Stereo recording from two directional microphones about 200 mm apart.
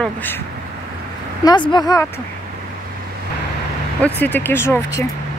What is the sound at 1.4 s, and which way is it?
Speech, 20° left (ahead or behind).